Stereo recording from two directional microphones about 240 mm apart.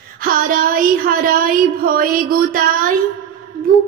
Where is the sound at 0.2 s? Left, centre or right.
Right.